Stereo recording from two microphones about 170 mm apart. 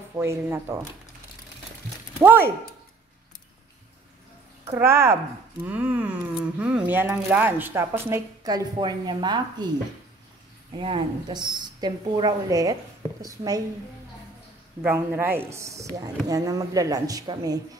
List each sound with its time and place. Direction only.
0.1 s speech: 15° right (ahead or behind)
2.1 s speech: 10° right (ahead or behind)
4.6 s speech: 15° right (ahead or behind)
10.8 s speech: 30° right (ahead or behind)
14.8 s speech: 10° right (ahead or behind)